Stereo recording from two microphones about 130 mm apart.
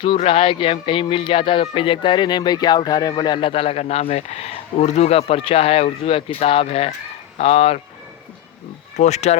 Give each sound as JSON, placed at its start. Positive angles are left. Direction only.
{"t": 0.2, "sound": "speech", "side_deg": 45}
{"t": 9.0, "sound": "speech", "side_deg": 60}